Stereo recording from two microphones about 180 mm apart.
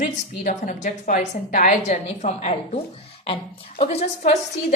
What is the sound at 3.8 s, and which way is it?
Speech, 35° left (ahead or behind).